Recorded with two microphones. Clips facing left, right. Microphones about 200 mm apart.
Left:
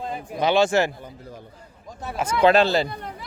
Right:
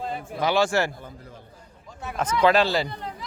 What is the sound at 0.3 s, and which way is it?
Speech, 20° left (ahead or behind).